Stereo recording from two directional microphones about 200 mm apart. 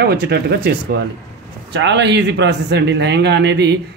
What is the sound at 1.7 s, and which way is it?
Speech, 60° right (ahead or behind).